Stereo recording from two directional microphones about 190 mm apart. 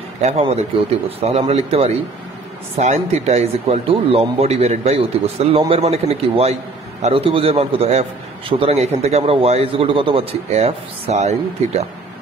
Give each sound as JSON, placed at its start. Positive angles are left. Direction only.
{"t": 0.2, "sound": "a man's voice", "side_deg": -30}